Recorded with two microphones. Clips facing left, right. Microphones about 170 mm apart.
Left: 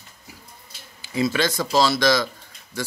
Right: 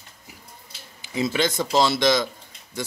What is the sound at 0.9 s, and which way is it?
Speech, 20° right (ahead or behind).